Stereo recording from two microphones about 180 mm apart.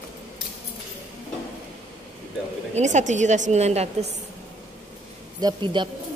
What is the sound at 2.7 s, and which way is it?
A woman's voice, 40° right (ahead or behind).